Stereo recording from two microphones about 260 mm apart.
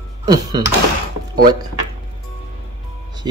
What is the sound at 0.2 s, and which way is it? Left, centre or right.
Speech, centre.